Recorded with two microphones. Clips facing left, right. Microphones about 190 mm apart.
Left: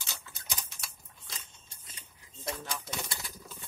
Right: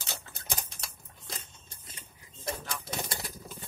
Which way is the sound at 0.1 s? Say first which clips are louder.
Right 5 dB; 55° right (ahead or behind).